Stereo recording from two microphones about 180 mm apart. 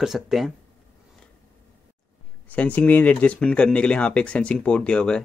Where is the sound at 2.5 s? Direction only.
10° left (ahead or behind).